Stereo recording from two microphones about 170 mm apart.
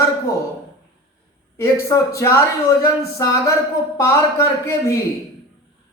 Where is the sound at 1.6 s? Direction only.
15° left (ahead or behind).